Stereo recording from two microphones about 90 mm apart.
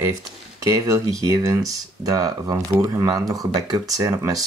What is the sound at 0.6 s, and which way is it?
Speech, 40° right (ahead or behind).